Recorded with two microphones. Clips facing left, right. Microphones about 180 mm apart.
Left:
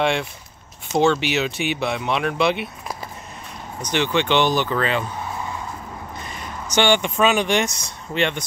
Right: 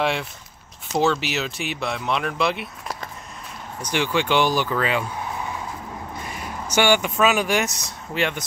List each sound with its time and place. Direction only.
0.0 s speech: 5° right (ahead or behind)
3.8 s speech: 10° right (ahead or behind)
6.2 s speech: 10° right (ahead or behind)